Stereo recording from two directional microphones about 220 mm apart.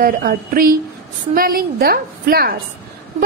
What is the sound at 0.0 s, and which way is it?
A woman's voice, 40° right (ahead or behind).